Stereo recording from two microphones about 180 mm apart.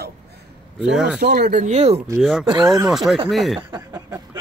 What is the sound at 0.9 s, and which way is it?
Speech, 5° right (ahead or behind).